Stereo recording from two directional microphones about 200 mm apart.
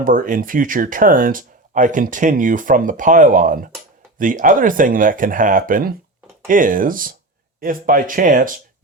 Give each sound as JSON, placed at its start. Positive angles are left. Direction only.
{"t": 0.0, "sound": "speech", "side_deg": -45}